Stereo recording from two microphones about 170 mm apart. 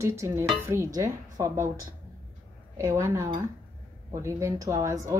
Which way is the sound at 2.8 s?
15° right (ahead or behind).